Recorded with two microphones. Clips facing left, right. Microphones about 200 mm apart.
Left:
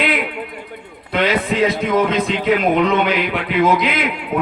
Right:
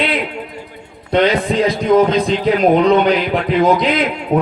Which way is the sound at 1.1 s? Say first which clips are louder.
Right 4 dB; 35° right (ahead or behind).